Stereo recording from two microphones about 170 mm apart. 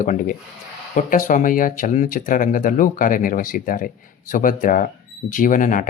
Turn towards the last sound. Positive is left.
turn(degrees=50)  # may be behind; listen again after turning